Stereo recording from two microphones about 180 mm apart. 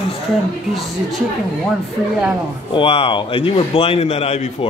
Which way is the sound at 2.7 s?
30° left (ahead or behind).